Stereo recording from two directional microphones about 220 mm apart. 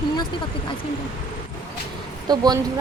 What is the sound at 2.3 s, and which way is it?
Speech, 20° right (ahead or behind).